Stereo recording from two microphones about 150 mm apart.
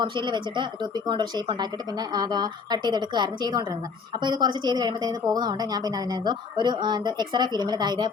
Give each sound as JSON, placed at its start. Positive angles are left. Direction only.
{"t": 0.0, "sound": "a woman's voice", "side_deg": -30}